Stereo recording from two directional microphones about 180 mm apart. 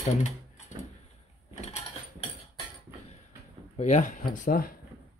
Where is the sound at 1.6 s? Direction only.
35° left (ahead or behind).